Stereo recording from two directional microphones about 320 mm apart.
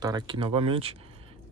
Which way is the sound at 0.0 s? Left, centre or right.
Centre.